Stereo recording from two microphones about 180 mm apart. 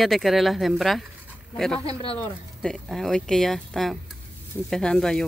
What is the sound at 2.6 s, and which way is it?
Stir, centre (ahead or behind).